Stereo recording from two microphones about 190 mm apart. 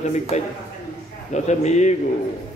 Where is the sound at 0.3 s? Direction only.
40° left (ahead or behind).